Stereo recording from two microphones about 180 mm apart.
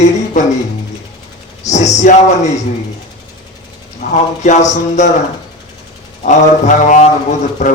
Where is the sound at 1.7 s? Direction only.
40° left (ahead or behind).